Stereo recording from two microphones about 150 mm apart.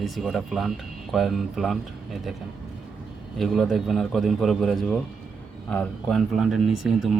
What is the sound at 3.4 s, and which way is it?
Speech, centre (ahead or behind).